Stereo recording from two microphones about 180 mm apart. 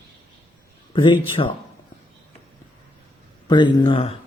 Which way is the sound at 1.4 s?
35° left (ahead or behind).